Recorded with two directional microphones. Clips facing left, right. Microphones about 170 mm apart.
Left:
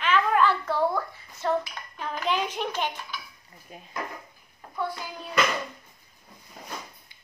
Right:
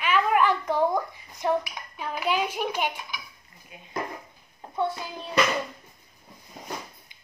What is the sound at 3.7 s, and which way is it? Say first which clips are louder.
Dishes: left 4 dB; 40° left (ahead or behind).